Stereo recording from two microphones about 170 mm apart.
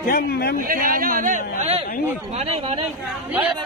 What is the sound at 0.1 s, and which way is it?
Speech, 70° left (ahead or behind).